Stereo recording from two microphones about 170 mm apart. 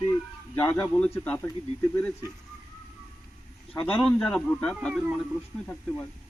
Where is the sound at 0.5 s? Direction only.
15° left (ahead or behind).